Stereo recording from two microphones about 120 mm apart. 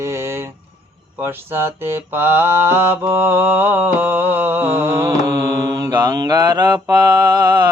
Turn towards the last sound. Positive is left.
turn(degrees=-35)  # may be behind; listen again after turning